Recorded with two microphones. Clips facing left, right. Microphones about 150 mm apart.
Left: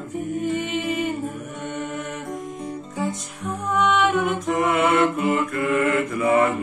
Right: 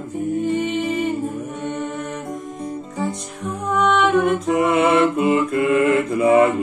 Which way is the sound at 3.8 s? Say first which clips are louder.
Right 3 dB; centre (ahead or behind).